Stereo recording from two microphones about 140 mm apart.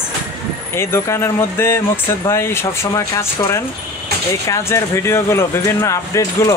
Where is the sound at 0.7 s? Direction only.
15° left (ahead or behind).